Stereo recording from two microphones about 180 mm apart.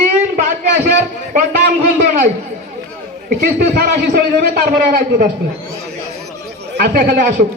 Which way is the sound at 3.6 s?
50° right (ahead or behind).